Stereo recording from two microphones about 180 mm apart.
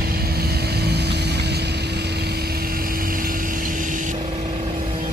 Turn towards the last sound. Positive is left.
turn(degrees=-45)  # may be behind; listen again after turning